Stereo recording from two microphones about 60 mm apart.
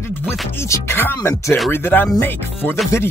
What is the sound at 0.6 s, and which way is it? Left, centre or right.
Speech, left.